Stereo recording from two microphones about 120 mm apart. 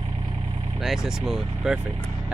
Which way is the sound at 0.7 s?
Centre (ahead or behind).